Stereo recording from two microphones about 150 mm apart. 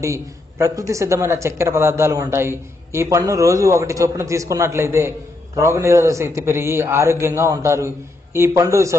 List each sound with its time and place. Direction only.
0.0 s speech: 20° right (ahead or behind)